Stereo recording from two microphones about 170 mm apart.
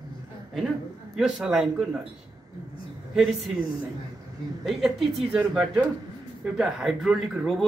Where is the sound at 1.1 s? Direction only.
5° right (ahead or behind).